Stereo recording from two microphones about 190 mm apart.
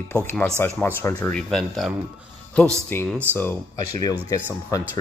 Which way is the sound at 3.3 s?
15° left (ahead or behind).